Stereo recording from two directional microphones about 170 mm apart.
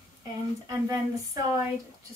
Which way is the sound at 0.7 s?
20° right (ahead or behind).